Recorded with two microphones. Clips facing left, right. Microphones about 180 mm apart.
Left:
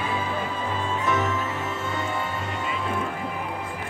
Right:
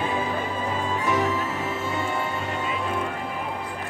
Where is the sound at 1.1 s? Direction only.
35° right (ahead or behind).